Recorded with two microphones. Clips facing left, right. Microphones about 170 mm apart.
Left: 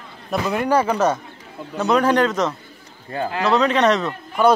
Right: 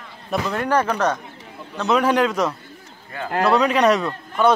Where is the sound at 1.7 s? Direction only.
Centre (ahead or behind).